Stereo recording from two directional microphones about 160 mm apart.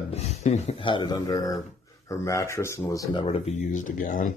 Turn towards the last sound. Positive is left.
turn(degrees=55)  # may be behind; listen again after turning